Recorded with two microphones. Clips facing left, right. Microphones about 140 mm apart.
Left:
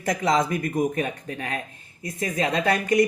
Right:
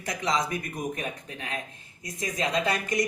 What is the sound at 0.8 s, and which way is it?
Speech, 50° left (ahead or behind).